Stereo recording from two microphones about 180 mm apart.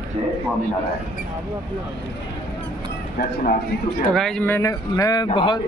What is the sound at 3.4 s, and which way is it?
Speech, 45° left (ahead or behind).